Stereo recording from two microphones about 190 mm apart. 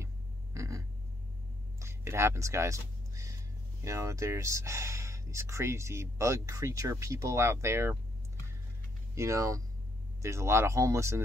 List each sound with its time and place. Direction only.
0.0 s a sound: 15° right (ahead or behind)
1.8 s speech: 15° right (ahead or behind)
9.1 s speech: 15° right (ahead or behind)